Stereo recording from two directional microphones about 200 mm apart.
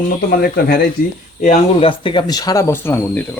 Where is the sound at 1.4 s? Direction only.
35° left (ahead or behind).